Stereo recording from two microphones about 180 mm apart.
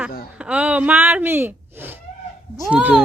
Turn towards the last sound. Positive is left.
turn(degrees=-5)  # may be behind; listen again after turning